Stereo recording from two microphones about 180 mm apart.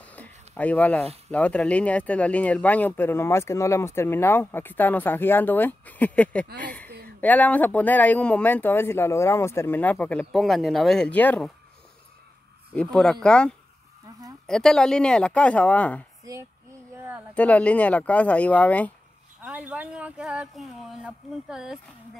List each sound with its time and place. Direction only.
0.0 s a sound: 10° left (ahead or behind)
1.3 s speech: 5° left (ahead or behind)
12.7 s speech: 5° left (ahead or behind)
16.9 s a sound: 15° right (ahead or behind)
17.3 s speech: 10° left (ahead or behind)
19.4 s speech: 5° right (ahead or behind)